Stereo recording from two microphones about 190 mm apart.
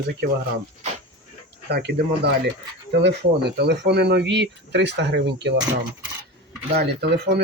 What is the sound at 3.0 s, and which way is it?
Speech, 60° right (ahead or behind).